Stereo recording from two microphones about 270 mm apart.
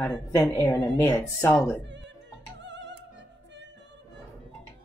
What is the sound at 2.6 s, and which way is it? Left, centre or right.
Music, right.